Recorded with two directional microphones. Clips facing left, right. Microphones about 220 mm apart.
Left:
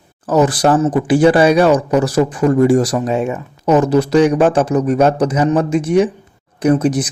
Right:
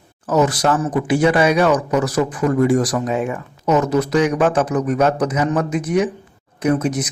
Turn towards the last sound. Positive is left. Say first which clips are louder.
# left 5 dB
turn(degrees=30)  # may be behind; listen again after turning